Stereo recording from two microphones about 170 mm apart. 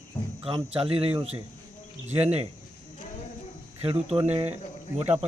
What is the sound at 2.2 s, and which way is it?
Speech, 40° right (ahead or behind).